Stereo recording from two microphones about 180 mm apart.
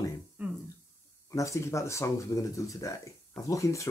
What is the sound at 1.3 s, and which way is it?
Speech, 15° left (ahead or behind).